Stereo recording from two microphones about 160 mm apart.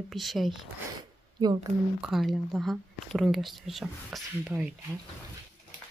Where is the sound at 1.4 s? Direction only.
25° right (ahead or behind).